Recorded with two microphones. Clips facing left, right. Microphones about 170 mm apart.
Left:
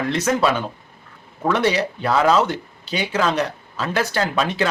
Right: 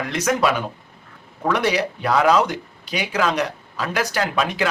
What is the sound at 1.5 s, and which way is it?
Speech, 10° right (ahead or behind).